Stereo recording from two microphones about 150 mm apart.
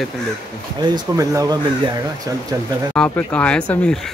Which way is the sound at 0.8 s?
25° right (ahead or behind).